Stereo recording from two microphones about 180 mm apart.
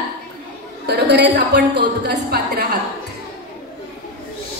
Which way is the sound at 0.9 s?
70° right (ahead or behind).